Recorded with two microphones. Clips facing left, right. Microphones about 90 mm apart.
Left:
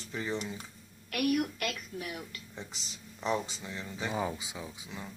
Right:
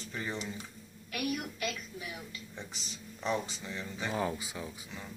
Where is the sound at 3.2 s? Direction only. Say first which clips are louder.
Left 1 dB; centre (ahead or behind).